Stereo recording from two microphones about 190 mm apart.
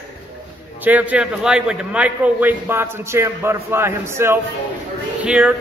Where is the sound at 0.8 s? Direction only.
10° right (ahead or behind).